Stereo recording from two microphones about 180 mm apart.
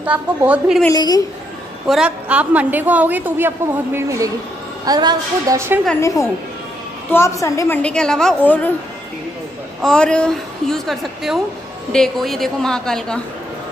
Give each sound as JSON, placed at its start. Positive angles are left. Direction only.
{"t": 0.0, "sound": "a woman's voice", "side_deg": -10}
{"t": 0.9, "sound": "speech", "side_deg": 20}
{"t": 1.9, "sound": "a woman's voice", "side_deg": -5}
{"t": 5.9, "sound": "a woman's voice", "side_deg": 15}
{"t": 9.8, "sound": "a woman's voice", "side_deg": 5}